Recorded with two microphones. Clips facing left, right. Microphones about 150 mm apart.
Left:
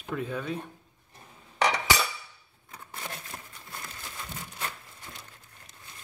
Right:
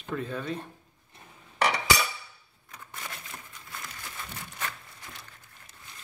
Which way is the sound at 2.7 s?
30° left (ahead or behind).